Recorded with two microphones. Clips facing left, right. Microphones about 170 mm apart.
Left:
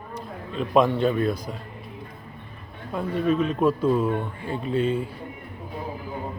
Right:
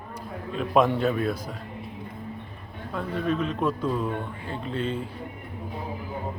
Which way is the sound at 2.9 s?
10° left (ahead or behind).